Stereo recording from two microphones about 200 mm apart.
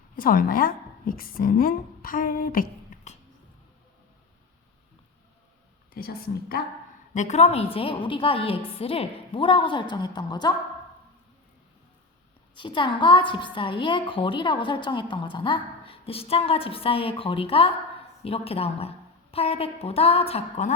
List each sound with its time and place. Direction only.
0.2 s a woman's voice: 45° left (ahead or behind)
5.9 s speech: 50° left (ahead or behind)
7.1 s a woman's voice: 35° left (ahead or behind)
12.5 s a woman's voice: 25° left (ahead or behind)